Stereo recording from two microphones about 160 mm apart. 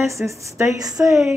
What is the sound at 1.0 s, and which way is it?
Speech, centre (ahead or behind).